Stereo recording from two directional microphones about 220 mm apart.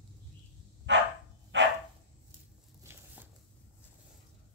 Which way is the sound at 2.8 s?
10° right (ahead or behind).